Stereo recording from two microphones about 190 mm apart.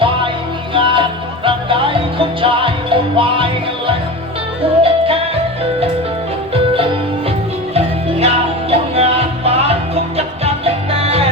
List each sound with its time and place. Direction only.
0.7 s music: 25° right (ahead or behind)
7.7 s music: 30° right (ahead or behind)